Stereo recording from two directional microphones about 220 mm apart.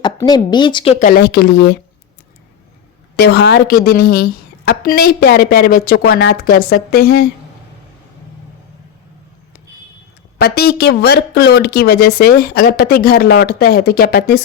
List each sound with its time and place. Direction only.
0.0 s speech: 20° left (ahead or behind)
0.9 s a woman's voice: 40° left (ahead or behind)
3.2 s a woman's voice: 50° left (ahead or behind)
10.3 s a woman's voice: 45° left (ahead or behind)